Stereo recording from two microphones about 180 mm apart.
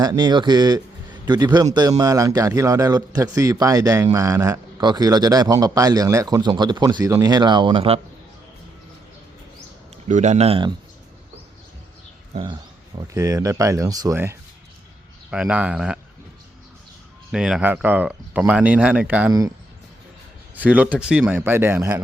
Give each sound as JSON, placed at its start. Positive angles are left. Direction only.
{"t": 0.0, "sound": "a man's voice", "side_deg": -20}
{"t": 10.1, "sound": "speech", "side_deg": -40}
{"t": 13.0, "sound": "speech", "side_deg": -20}
{"t": 15.3, "sound": "speech", "side_deg": -5}
{"t": 17.3, "sound": "speech", "side_deg": -5}
{"t": 20.6, "sound": "speech", "side_deg": -10}